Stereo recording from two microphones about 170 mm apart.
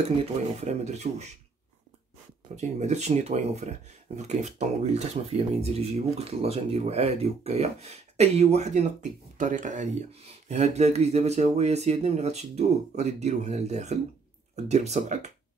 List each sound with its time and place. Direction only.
0.2 s speech: 40° right (ahead or behind)
2.5 s speech: 40° right (ahead or behind)